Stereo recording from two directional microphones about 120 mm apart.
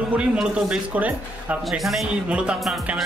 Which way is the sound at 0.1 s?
10° right (ahead or behind).